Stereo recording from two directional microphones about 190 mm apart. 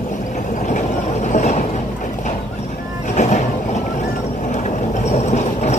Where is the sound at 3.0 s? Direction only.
40° left (ahead or behind).